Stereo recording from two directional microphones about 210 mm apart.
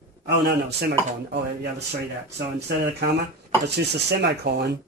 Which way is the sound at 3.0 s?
55° right (ahead or behind).